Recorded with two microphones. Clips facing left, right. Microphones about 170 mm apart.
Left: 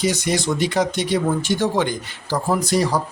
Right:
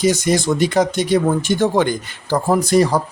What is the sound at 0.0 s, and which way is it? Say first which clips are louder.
A man's voice: right 5 dB; 45° right (ahead or behind).